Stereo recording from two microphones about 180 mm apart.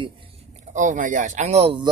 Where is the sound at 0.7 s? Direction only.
45° right (ahead or behind).